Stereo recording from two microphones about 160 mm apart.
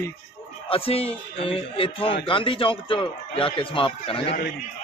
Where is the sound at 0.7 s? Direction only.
35° left (ahead or behind).